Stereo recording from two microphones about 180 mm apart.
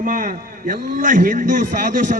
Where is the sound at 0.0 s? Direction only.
50° right (ahead or behind).